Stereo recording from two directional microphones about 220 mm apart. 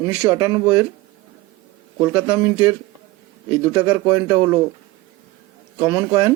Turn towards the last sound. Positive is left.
turn(degrees=-15)  # may be behind; listen again after turning